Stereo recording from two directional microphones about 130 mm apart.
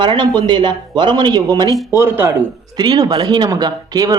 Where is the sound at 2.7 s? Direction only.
35° right (ahead or behind).